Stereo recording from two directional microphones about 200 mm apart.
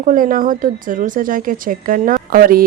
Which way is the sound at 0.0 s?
40° right (ahead or behind).